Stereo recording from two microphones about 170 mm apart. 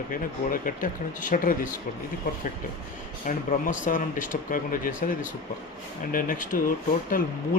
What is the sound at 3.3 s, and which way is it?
Speech, 50° left (ahead or behind).